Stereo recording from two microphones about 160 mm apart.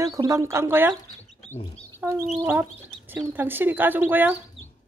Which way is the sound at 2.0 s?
15° right (ahead or behind).